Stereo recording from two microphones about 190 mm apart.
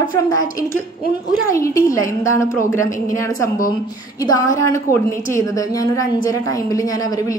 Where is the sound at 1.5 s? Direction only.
15° left (ahead or behind).